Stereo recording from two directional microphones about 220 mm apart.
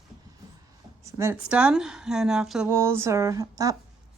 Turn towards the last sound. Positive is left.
turn(degrees=-15)  # may be behind; listen again after turning